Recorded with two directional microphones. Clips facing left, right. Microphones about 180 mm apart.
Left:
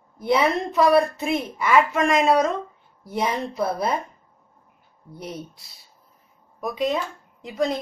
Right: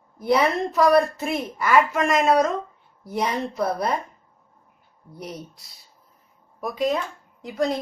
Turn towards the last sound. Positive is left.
turn(degrees=0)  # may be behind; listen again after turning